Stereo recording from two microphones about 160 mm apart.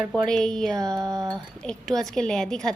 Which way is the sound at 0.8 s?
20° right (ahead or behind).